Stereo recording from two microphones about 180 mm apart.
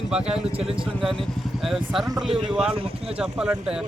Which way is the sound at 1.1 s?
Centre (ahead or behind).